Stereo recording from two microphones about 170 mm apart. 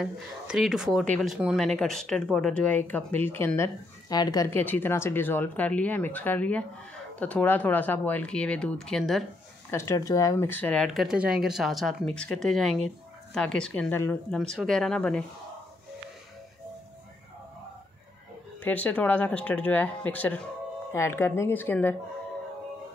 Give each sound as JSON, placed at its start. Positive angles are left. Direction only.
{"t": 0.0, "sound": "speech", "side_deg": -5}
{"t": 9.7, "sound": "speech", "side_deg": 15}
{"t": 18.6, "sound": "speech", "side_deg": 10}